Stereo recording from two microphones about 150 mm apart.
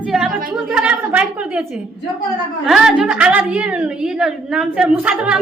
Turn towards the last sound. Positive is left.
turn(degrees=-5)  # may be behind; listen again after turning